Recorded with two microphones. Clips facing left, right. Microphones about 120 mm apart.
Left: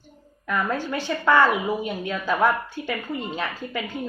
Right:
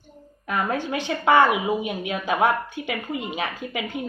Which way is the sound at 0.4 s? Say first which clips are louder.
Even; 15° right (ahead or behind).